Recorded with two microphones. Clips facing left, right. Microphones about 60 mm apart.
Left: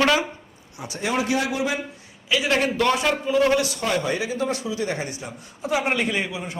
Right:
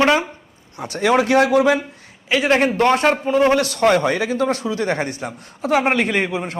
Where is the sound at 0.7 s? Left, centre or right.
Right.